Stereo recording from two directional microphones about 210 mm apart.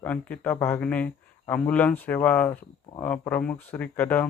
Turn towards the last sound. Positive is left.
turn(degrees=10)  # may be behind; listen again after turning